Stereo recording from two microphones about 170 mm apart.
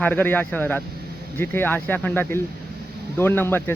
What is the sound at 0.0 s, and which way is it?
Speech, 10° left (ahead or behind).